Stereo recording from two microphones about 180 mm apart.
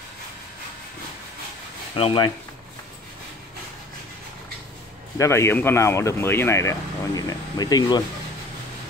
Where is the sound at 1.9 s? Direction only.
30° left (ahead or behind).